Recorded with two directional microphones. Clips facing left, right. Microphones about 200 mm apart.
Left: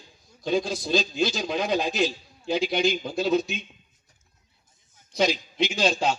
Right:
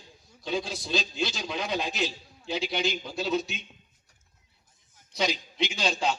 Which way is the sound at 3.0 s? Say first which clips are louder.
Left 5 dB; 45° left (ahead or behind).